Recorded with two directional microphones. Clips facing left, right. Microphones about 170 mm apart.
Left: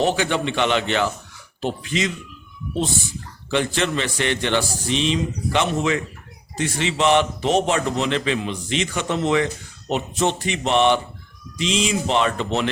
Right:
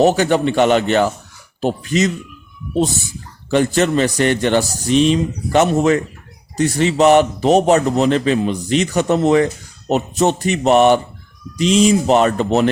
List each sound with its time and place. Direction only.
0.0 s a man's voice: 45° right (ahead or behind)
3.5 s a man's voice: 45° right (ahead or behind)